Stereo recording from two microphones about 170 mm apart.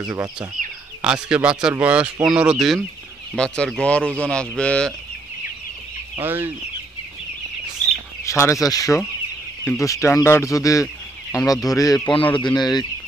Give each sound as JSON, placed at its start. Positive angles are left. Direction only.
{"t": 1.0, "sound": "speech", "side_deg": -5}
{"t": 6.1, "sound": "chicken", "side_deg": -10}
{"t": 8.2, "sound": "speech", "side_deg": 15}